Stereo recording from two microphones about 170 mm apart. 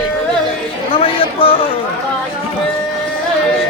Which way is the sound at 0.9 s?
30° left (ahead or behind).